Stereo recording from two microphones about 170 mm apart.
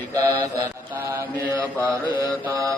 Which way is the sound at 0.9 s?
10° right (ahead or behind).